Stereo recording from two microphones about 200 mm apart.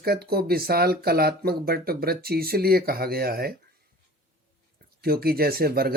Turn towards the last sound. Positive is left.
turn(degrees=-50)  # may be behind; listen again after turning